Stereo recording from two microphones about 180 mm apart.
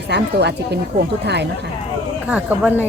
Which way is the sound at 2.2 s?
5° right (ahead or behind).